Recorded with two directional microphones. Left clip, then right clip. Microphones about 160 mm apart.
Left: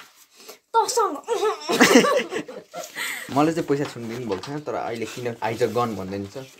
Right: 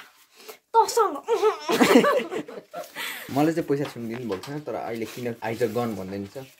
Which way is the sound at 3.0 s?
50° right (ahead or behind).